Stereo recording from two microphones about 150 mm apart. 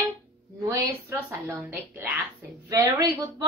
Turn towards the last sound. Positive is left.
turn(degrees=-25)  # may be behind; listen again after turning